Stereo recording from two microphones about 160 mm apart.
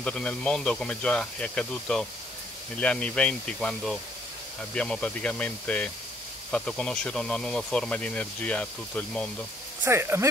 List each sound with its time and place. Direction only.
0.0 s speech: 5° left (ahead or behind)
9.8 s speech: 15° right (ahead or behind)